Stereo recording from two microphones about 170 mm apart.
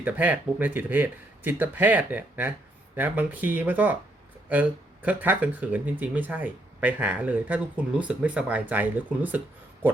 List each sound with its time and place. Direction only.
0.0 s speech: 10° right (ahead or behind)
5.0 s speech: 10° right (ahead or behind)